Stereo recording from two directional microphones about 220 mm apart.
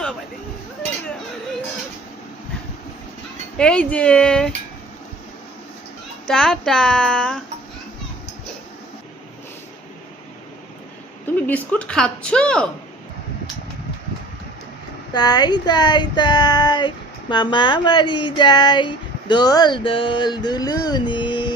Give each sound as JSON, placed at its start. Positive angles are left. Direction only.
{"t": 3.6, "sound": "a woman's voice", "side_deg": 5}
{"t": 6.2, "sound": "a woman's voice", "side_deg": 5}
{"t": 11.4, "sound": "a woman's voice", "side_deg": 5}
{"t": 15.1, "sound": "speech", "side_deg": 20}